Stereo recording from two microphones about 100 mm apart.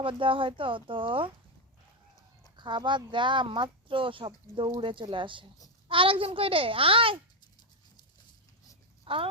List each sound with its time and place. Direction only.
0.0 s a child's voice: 60° right (ahead or behind)
2.6 s a child's voice: 55° right (ahead or behind)
9.1 s speech: 65° right (ahead or behind)